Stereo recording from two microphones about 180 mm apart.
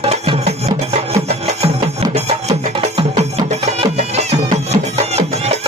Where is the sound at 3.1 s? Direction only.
35° right (ahead or behind).